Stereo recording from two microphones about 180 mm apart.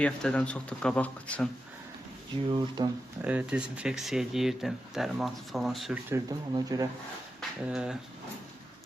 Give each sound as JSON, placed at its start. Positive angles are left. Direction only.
{"t": 0.0, "sound": "speech", "side_deg": 5}
{"t": 2.5, "sound": "speech", "side_deg": -25}
{"t": 3.2, "sound": "speech", "side_deg": -10}
{"t": 6.1, "sound": "speech", "side_deg": -20}
{"t": 7.7, "sound": "speech", "side_deg": -5}